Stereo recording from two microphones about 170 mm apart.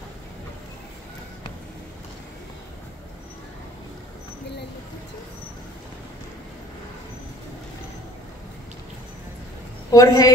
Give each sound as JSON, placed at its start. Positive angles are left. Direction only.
{"t": 9.8, "sound": "a woman's voice", "side_deg": 20}